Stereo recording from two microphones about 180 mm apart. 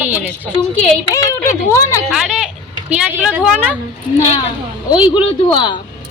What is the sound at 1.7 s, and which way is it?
Speech, 15° left (ahead or behind).